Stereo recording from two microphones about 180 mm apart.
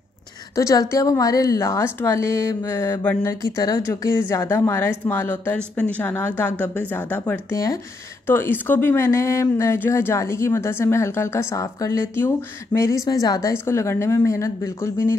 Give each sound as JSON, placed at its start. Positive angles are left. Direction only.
{"t": 0.6, "sound": "speech", "side_deg": 15}